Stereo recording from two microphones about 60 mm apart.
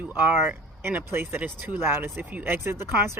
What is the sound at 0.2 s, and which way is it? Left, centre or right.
Speech, right.